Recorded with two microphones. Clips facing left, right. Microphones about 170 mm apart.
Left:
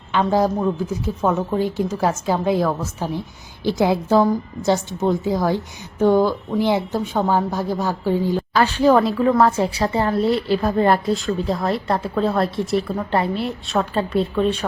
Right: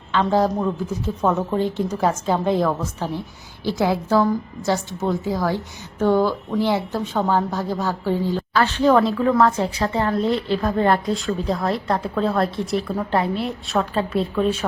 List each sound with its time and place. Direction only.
0.1 s a woman's voice: 10° left (ahead or behind)
3.6 s a woman's voice: 15° left (ahead or behind); by 14.6 s centre (ahead or behind)